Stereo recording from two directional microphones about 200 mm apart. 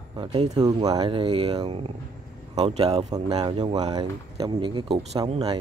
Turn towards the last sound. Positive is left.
turn(degrees=-25)  # may be behind; listen again after turning